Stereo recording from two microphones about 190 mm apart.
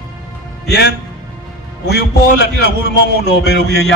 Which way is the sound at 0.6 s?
60° left (ahead or behind).